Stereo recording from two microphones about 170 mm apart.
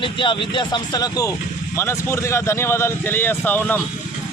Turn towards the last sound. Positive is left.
turn(degrees=10)  # may be behind; listen again after turning